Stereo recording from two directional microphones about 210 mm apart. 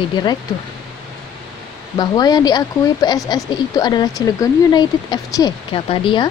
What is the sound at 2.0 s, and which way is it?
Speech, 20° left (ahead or behind).